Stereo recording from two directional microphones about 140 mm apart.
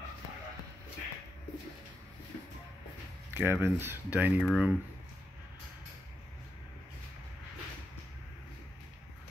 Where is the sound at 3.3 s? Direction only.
15° right (ahead or behind).